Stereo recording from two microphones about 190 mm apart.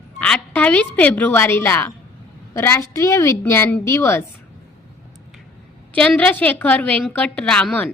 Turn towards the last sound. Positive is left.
turn(degrees=5)  # may be behind; listen again after turning